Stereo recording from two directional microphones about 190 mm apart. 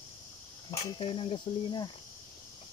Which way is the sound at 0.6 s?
25° left (ahead or behind).